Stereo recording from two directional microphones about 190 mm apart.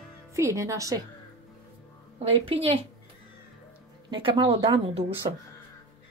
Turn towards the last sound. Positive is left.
turn(degrees=-30)  # may be behind; listen again after turning